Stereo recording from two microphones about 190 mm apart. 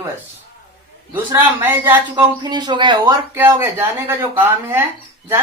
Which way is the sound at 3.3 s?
15° right (ahead or behind).